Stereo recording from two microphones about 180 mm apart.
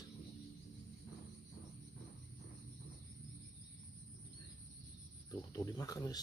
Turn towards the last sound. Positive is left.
turn(degrees=20)  # may be behind; listen again after turning